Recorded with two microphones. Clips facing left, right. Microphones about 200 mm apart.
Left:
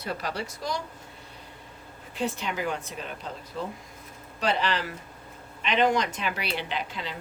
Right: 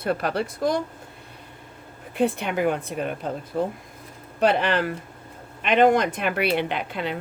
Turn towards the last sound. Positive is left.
turn(degrees=-60)  # may be behind; listen again after turning